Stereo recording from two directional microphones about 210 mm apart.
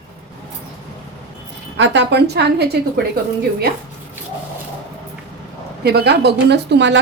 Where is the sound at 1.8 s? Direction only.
55° right (ahead or behind).